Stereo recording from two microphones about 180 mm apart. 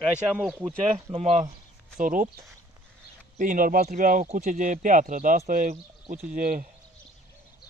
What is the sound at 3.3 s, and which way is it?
Speech, 50° right (ahead or behind).